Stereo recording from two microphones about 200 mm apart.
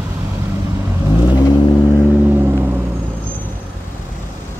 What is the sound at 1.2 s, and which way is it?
Vehicle, 20° left (ahead or behind).